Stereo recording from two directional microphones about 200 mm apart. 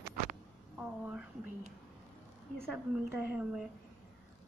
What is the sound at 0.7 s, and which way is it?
Speech, 5° right (ahead or behind).